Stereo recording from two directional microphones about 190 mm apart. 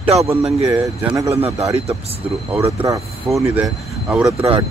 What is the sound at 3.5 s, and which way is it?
Speech, 5° right (ahead or behind).